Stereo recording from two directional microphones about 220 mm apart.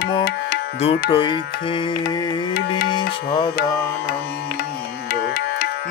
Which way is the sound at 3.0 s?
25° left (ahead or behind).